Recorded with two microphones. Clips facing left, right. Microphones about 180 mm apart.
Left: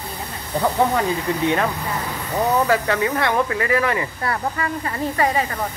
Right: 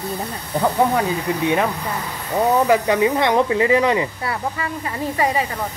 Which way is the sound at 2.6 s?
15° right (ahead or behind).